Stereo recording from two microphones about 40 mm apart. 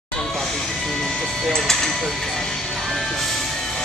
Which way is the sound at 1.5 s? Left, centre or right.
Centre.